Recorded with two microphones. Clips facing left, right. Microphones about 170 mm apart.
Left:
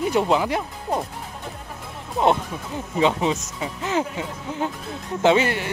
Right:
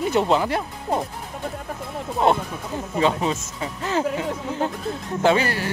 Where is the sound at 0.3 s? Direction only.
10° left (ahead or behind).